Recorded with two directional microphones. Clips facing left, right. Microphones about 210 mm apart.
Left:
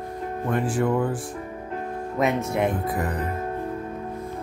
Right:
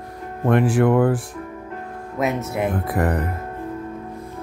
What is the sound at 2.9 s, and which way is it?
Speech, 60° right (ahead or behind).